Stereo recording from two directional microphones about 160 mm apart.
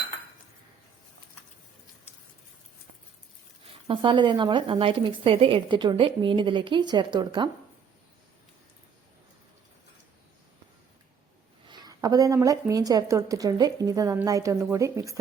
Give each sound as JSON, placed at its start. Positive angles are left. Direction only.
{"t": 3.8, "sound": "a woman's voice", "side_deg": -30}
{"t": 11.7, "sound": "speech", "side_deg": -25}